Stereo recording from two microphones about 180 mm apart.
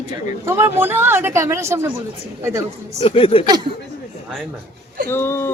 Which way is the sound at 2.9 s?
30° left (ahead or behind).